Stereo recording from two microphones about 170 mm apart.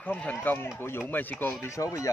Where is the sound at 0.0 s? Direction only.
10° left (ahead or behind).